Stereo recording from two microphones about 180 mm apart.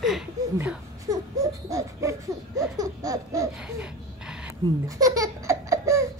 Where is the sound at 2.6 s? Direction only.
20° right (ahead or behind).